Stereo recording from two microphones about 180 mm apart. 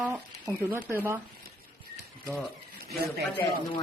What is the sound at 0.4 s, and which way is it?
Speech, 15° right (ahead or behind).